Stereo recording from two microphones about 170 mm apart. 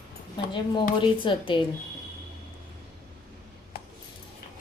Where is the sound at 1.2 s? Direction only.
30° left (ahead or behind).